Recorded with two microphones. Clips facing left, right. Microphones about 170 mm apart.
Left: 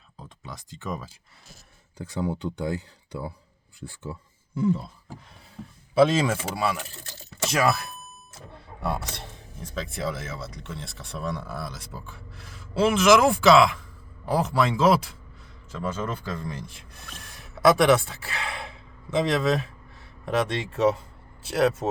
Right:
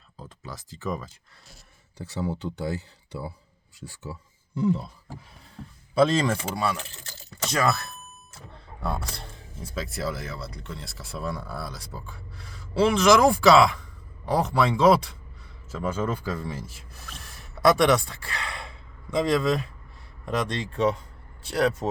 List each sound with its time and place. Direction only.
0.2 s a sound: centre (ahead or behind)
0.8 s speech: centre (ahead or behind)
5.9 s speech: 5° left (ahead or behind)
9.6 s speech: 5° right (ahead or behind)
15.7 s speech: 10° right (ahead or behind)